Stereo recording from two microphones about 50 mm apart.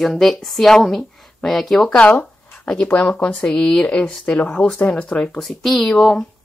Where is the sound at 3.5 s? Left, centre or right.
Centre.